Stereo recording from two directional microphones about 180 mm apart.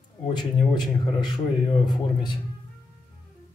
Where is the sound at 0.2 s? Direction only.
25° left (ahead or behind).